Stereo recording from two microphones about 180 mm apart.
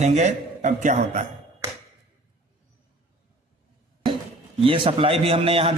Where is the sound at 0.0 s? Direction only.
40° right (ahead or behind).